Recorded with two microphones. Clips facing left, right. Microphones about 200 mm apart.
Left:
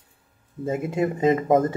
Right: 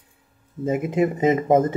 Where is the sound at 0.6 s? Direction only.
20° right (ahead or behind).